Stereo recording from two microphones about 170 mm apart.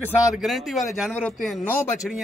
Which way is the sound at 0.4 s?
Centre (ahead or behind).